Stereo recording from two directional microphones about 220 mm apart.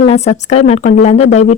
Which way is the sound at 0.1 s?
30° left (ahead or behind).